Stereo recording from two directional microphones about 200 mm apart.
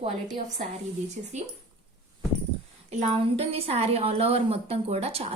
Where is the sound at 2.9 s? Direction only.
30° right (ahead or behind).